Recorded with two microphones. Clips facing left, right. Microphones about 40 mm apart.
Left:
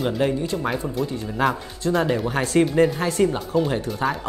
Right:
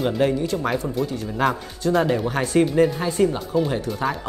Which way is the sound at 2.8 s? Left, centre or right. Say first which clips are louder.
Even; left.